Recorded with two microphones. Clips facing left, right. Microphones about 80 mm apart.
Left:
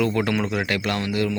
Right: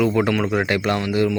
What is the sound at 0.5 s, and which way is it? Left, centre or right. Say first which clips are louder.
Speech: right 4 dB; right.